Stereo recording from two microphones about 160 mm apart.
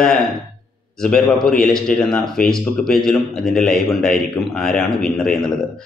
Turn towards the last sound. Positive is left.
turn(degrees=5)  # may be behind; listen again after turning